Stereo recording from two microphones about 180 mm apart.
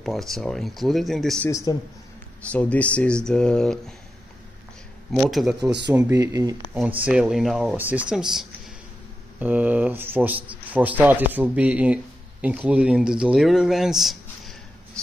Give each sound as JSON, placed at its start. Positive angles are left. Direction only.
{"t": 0.0, "sound": "speech", "side_deg": 0}
{"t": 1.5, "sound": "a man's voice", "side_deg": 20}
{"t": 2.5, "sound": "speech", "side_deg": 5}
{"t": 5.1, "sound": "speech", "side_deg": 0}
{"t": 5.9, "sound": "speech", "side_deg": -15}